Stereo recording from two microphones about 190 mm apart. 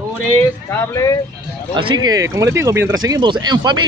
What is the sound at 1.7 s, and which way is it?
Speech, 25° right (ahead or behind).